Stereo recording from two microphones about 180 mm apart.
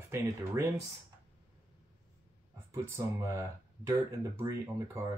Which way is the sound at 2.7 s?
15° right (ahead or behind).